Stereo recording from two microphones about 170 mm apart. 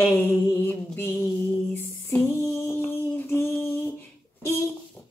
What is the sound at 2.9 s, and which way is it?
Female singing, 15° left (ahead or behind).